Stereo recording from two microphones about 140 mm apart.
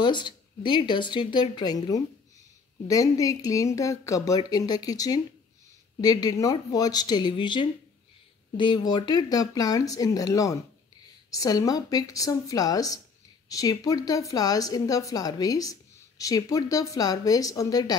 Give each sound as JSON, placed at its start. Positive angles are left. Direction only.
{"t": 0.0, "sound": "speech", "side_deg": 35}